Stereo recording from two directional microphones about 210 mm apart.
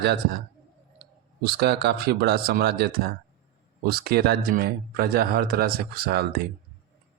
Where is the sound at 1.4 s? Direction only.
50° right (ahead or behind).